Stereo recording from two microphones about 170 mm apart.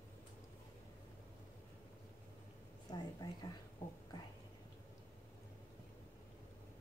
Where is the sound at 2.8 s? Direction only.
25° left (ahead or behind).